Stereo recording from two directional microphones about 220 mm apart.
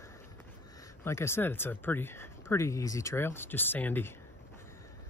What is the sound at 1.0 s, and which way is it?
Speech, 10° left (ahead or behind).